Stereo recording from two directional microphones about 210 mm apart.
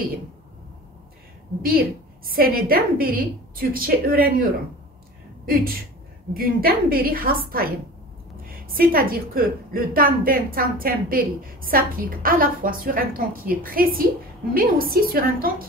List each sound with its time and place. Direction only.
1.6 s a woman's voice: 45° right (ahead or behind)
8.5 s a woman's voice: 45° right (ahead or behind)